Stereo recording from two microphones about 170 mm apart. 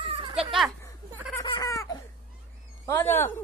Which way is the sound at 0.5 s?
Centre (ahead or behind).